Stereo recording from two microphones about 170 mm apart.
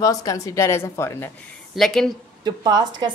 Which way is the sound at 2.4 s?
25° right (ahead or behind).